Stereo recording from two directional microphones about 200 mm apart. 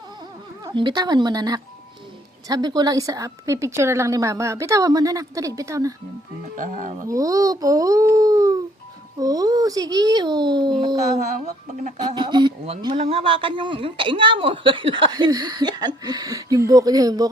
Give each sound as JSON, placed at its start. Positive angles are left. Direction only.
{"t": 0.6, "sound": "a woman's voice", "side_deg": -25}
{"t": 6.4, "sound": "speech", "side_deg": -40}
{"t": 7.1, "sound": "speech", "side_deg": -15}
{"t": 11.0, "sound": "speech", "side_deg": -35}
{"t": 11.9, "sound": "speech", "side_deg": -20}